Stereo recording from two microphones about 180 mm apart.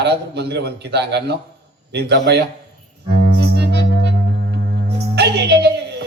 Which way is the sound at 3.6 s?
70° right (ahead or behind).